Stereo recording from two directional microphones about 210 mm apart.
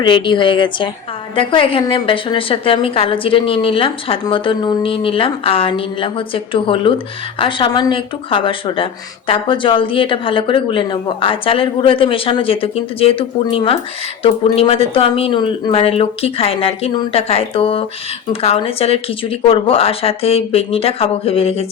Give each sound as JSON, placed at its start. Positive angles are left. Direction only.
{"t": 0.0, "sound": "speech", "side_deg": 25}